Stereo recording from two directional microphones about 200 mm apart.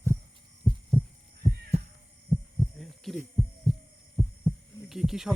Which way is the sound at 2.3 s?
Centre (ahead or behind).